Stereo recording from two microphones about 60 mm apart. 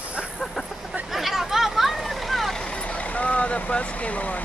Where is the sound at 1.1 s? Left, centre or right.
Centre.